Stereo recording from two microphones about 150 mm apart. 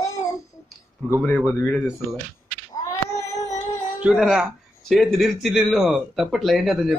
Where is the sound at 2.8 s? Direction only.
20° left (ahead or behind).